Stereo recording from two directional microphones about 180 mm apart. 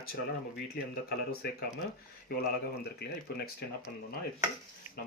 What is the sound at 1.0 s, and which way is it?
Speech, 60° left (ahead or behind).